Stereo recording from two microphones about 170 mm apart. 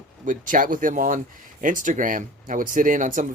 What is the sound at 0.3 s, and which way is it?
Speech, 50° right (ahead or behind).